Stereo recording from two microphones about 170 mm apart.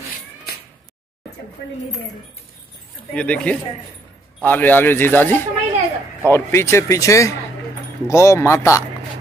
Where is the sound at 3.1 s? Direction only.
5° left (ahead or behind).